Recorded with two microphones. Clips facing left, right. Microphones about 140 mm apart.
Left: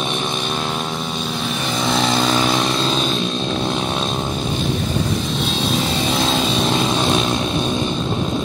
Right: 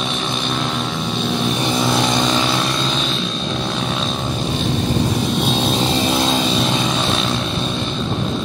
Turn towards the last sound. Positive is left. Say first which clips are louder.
# left 2 dB
turn(degrees=10)  # may be behind; listen again after turning